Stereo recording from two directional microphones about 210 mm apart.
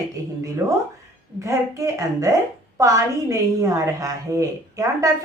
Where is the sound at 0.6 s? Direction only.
15° right (ahead or behind).